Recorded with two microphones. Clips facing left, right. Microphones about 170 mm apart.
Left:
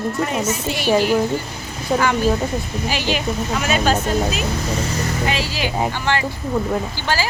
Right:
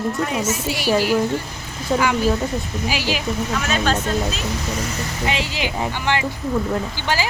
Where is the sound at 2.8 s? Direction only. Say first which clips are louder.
Left 2 dB; 5° right (ahead or behind).